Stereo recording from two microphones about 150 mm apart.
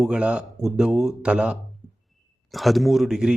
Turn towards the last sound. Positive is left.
turn(degrees=-5)  # may be behind; listen again after turning